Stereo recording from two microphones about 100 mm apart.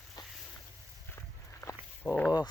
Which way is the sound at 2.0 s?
15° right (ahead or behind).